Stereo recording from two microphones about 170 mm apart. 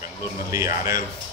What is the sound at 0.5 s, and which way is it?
Speech, 20° right (ahead or behind).